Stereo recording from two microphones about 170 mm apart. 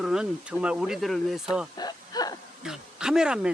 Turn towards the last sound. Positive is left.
turn(degrees=-5)  # may be behind; listen again after turning